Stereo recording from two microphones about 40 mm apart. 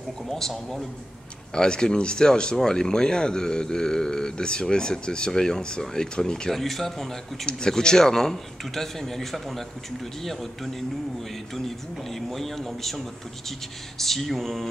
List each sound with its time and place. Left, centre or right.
0.3 s speech: centre
1.5 s a man's voice: centre
6.5 s speech: centre
7.4 s a man's voice: centre
11.5 s speech: centre